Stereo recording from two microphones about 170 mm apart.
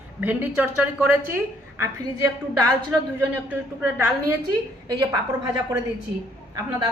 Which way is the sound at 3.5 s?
10° right (ahead or behind).